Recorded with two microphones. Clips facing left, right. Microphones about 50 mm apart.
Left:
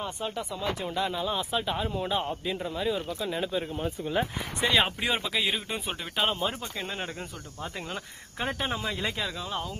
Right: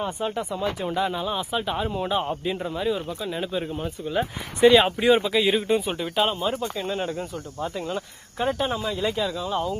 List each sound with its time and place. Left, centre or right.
0.0 s speech: centre
3.8 s speech: centre
8.8 s speech: left
9.2 s speech: centre